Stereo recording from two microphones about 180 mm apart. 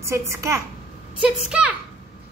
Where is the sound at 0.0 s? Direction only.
15° right (ahead or behind).